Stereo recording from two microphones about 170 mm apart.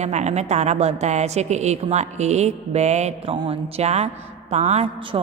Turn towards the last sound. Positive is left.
turn(degrees=-30)  # may be behind; listen again after turning